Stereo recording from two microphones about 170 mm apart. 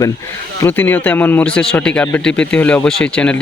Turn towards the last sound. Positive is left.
turn(degrees=5)  # may be behind; listen again after turning